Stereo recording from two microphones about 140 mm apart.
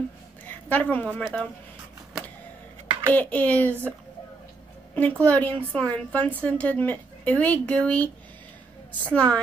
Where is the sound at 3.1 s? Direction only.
10° left (ahead or behind).